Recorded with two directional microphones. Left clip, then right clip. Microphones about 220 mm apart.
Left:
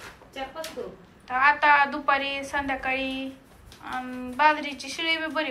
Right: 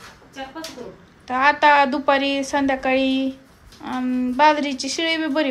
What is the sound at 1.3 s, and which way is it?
A woman's voice, 20° right (ahead or behind).